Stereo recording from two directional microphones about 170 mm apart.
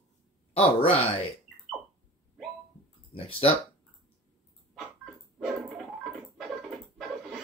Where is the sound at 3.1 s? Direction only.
35° left (ahead or behind).